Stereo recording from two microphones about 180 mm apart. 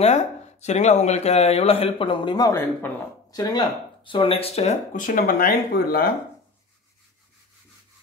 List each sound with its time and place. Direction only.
0.0 s speech: 40° left (ahead or behind); by 6.0 s 55° left (ahead or behind)